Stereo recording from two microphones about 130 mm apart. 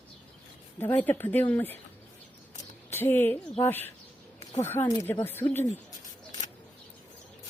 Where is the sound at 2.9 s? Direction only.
15° left (ahead or behind).